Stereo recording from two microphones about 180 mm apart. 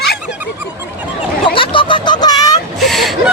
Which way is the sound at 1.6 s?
30° left (ahead or behind).